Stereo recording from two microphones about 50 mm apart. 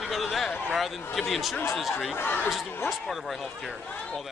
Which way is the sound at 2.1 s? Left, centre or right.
Left.